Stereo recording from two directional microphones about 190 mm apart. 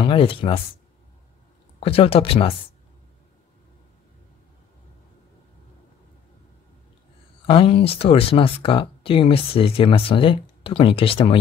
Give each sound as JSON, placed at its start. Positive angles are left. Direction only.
{"t": 0.0, "sound": "speech", "side_deg": 30}
{"t": 1.8, "sound": "speech", "side_deg": 30}
{"t": 7.4, "sound": "speech", "side_deg": 30}